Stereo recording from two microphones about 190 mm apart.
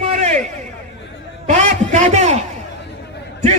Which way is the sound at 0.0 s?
35° right (ahead or behind).